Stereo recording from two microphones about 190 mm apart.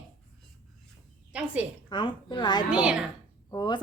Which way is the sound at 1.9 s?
25° left (ahead or behind).